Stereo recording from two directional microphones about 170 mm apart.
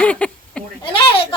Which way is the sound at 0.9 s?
30° left (ahead or behind).